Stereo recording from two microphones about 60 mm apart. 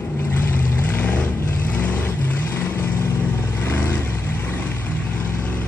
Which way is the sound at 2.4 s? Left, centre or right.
Left.